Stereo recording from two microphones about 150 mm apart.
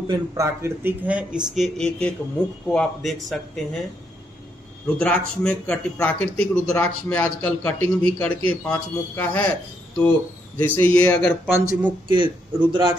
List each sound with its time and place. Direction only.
0.1 s a man's voice: 25° right (ahead or behind); by 3.8 s centre (ahead or behind)
4.8 s a man's voice: 10° left (ahead or behind)
10.6 s a man's voice: 10° left (ahead or behind)
11.5 s a man's voice: 15° right (ahead or behind)
12.1 s a man's voice: 30° right (ahead or behind)